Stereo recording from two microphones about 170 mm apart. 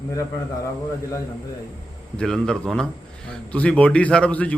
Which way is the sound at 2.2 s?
5° left (ahead or behind).